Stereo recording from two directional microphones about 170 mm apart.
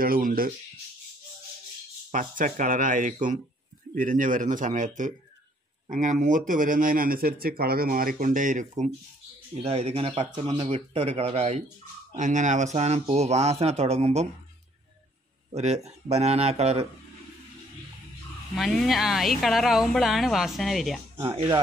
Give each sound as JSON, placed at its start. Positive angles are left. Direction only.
{"t": 0.0, "sound": "speech", "side_deg": -55}
{"t": 2.0, "sound": "speech", "side_deg": -50}
{"t": 15.5, "sound": "speech", "side_deg": -40}
{"t": 18.6, "sound": "speech", "side_deg": 0}
{"t": 21.2, "sound": "speech", "side_deg": -30}